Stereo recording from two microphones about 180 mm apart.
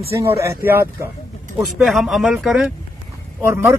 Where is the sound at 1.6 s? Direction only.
Centre (ahead or behind).